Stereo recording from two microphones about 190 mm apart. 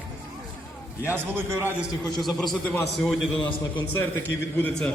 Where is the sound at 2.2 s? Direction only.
5° left (ahead or behind).